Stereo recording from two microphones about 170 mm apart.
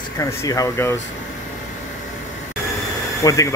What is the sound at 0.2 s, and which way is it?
Speech, 20° left (ahead or behind).